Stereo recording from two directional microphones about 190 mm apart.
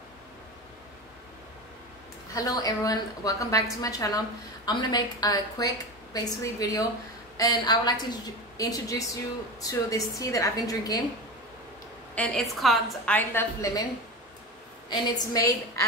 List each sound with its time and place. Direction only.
2.3 s a woman's voice: 20° left (ahead or behind)
12.2 s a woman's voice: centre (ahead or behind)
14.9 s a woman's voice: 20° left (ahead or behind)